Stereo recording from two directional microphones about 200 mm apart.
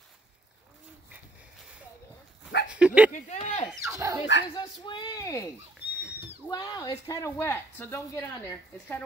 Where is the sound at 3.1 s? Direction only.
35° left (ahead or behind).